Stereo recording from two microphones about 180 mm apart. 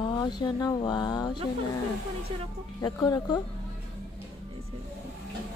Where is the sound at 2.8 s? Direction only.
20° left (ahead or behind).